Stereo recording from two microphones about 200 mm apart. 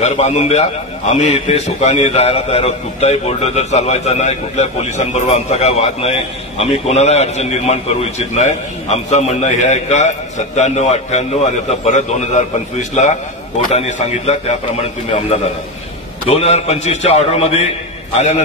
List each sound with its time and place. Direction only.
0.0 s a man's voice: 35° left (ahead or behind)
13.7 s a man's voice: 35° left (ahead or behind)